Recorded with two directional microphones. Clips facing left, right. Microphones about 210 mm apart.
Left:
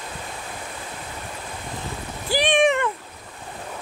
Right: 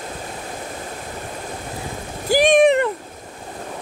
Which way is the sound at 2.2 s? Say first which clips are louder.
Right 6 dB; 45° right (ahead or behind).